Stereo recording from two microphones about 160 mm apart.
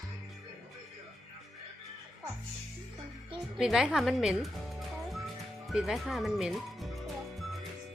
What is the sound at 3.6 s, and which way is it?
Speech, 5° right (ahead or behind).